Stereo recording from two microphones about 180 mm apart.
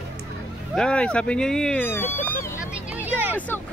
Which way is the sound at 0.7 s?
5° left (ahead or behind).